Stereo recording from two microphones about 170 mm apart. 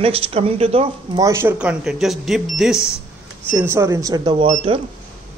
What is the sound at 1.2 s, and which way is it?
Speech, 15° right (ahead or behind).